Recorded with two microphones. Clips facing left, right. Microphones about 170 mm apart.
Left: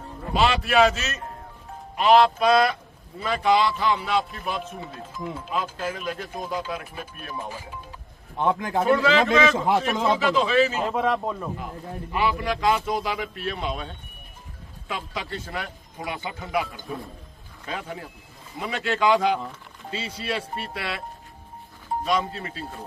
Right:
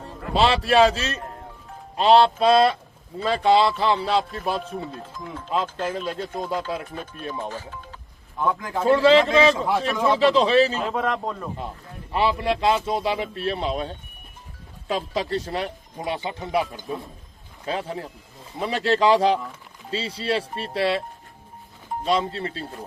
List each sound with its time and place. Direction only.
0.3 s a man's voice: 30° right (ahead or behind)
4.6 s speech: 5° left (ahead or behind)
5.8 s a man's voice: 30° right (ahead or behind)
7.4 s speech: 10° left (ahead or behind)
8.4 s speech: 25° left (ahead or behind)
8.8 s a man's voice: 30° right (ahead or behind)
9.6 s speech: 20° left (ahead or behind)
10.3 s speech: 35° right (ahead or behind)
10.8 s speech: centre (ahead or behind)
12.1 s a man's voice: 30° right (ahead or behind)
22.0 s speech: 30° right (ahead or behind)